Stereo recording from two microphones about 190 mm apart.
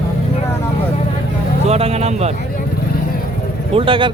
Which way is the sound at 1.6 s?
35° right (ahead or behind).